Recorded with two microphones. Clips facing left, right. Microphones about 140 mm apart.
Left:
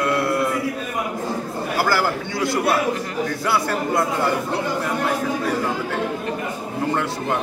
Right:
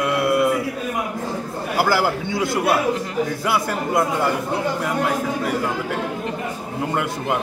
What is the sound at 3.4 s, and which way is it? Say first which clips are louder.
Speech: even; 15° right (ahead or behind).